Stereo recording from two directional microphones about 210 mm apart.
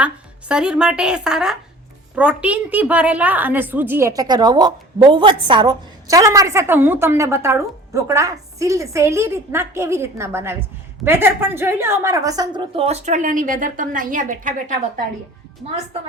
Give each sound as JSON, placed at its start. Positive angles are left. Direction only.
{"t": 0.0, "sound": "a woman's voice", "side_deg": -5}